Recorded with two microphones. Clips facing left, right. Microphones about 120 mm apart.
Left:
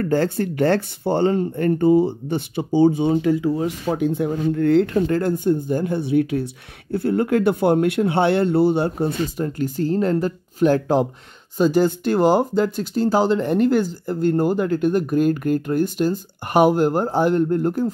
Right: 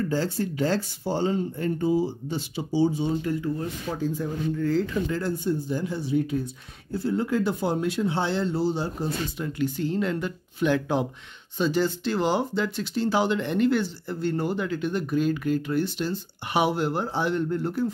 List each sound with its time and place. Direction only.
0.0 s speech: 60° left (ahead or behind); by 3.7 s 90° left
3.8 s speech: 65° left (ahead or behind)
9.4 s speech: 45° left (ahead or behind)